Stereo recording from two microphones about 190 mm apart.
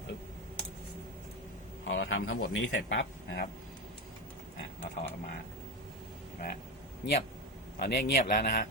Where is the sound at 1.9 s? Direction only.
85° left.